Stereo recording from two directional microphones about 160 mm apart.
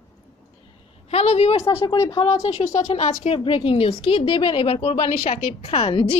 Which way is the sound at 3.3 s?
35° left (ahead or behind).